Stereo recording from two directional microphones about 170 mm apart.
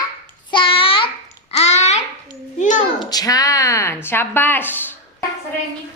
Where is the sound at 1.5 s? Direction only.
40° left (ahead or behind).